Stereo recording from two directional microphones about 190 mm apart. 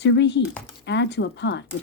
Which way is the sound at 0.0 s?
65° left (ahead or behind).